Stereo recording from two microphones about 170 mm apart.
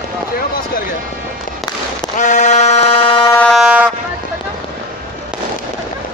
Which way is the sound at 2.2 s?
45° left (ahead or behind).